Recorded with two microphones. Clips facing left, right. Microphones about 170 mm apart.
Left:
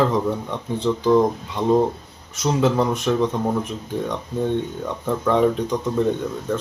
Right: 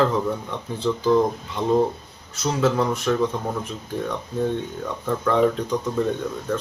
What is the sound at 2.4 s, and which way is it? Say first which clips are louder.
Speech: left 2 dB; 15° left (ahead or behind).